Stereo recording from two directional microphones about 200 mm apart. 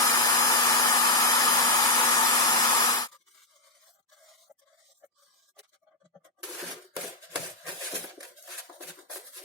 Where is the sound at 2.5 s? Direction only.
20° left (ahead or behind).